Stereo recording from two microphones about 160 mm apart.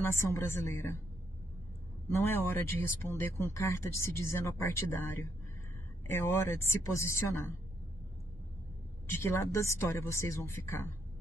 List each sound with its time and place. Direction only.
0.1 s speech: 15° left (ahead or behind)
2.0 s speech: 15° left (ahead or behind)
9.0 s speech: 15° left (ahead or behind)